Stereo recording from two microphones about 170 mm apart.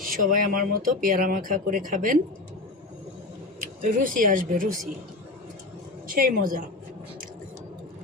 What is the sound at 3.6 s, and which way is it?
Speech, 50° right (ahead or behind).